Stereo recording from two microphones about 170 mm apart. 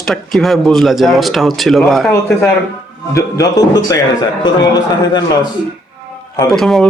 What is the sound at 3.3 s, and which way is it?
Speech, 20° left (ahead or behind).